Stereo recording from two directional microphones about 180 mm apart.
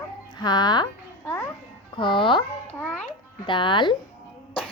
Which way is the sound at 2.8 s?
10° left (ahead or behind).